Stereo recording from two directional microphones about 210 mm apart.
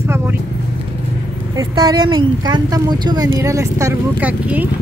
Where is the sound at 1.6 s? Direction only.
20° right (ahead or behind).